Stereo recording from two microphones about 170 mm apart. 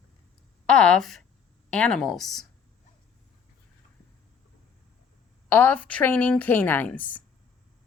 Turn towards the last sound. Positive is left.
turn(degrees=10)  # may be behind; listen again after turning